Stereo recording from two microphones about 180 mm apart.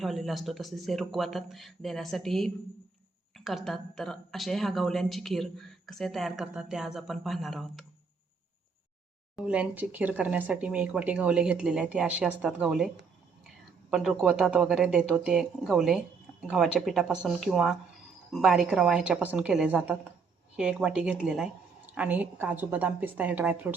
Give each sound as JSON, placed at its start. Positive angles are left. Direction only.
{"t": 0.0, "sound": "a woman's voice", "side_deg": 0}
{"t": 9.3, "sound": "speech", "side_deg": -5}
{"t": 13.9, "sound": "a woman's voice", "side_deg": 0}